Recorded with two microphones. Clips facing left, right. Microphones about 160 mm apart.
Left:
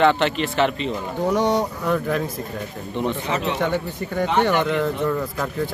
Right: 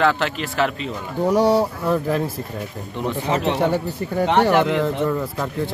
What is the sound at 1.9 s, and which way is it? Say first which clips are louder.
Speech: right 2 dB; 30° right (ahead or behind).